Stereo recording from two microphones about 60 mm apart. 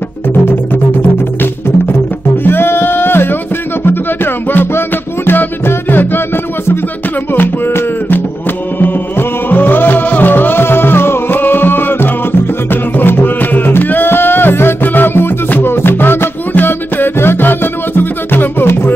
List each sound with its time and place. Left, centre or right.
2.4 s music: left